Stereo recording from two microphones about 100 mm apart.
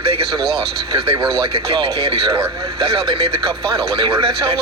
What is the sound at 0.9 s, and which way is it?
Speech, 55° right (ahead or behind).